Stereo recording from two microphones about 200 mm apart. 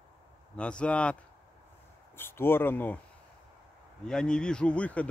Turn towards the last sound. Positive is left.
turn(degrees=5)  # may be behind; listen again after turning